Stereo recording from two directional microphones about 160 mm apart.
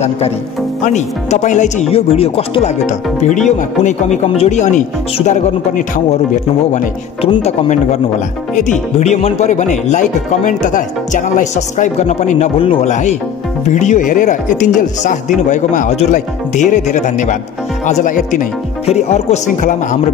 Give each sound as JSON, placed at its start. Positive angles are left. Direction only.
{"t": 0.8, "sound": "speech", "side_deg": 45}
{"t": 7.2, "sound": "speech", "side_deg": 40}
{"t": 12.9, "sound": "speech", "side_deg": 50}